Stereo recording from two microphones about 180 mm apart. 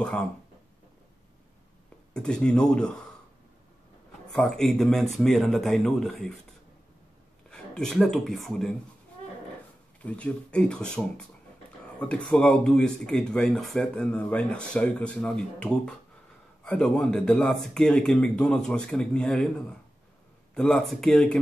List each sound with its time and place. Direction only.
2.1 s speech: 5° left (ahead or behind)
4.3 s speech: 5° left (ahead or behind)
7.5 s speech: 5° left (ahead or behind)
10.0 s speech: 5° left (ahead or behind)
20.5 s speech: 5° left (ahead or behind)